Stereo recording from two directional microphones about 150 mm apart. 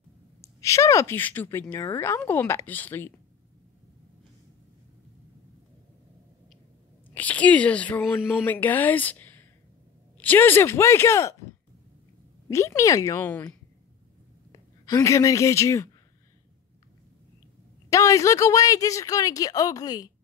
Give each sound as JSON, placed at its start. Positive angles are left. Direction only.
{"t": 0.6, "sound": "speech", "side_deg": 20}
{"t": 7.2, "sound": "a woman's voice", "side_deg": 10}
{"t": 12.4, "sound": "a woman's voice", "side_deg": 20}
{"t": 17.8, "sound": "a woman's voice", "side_deg": 20}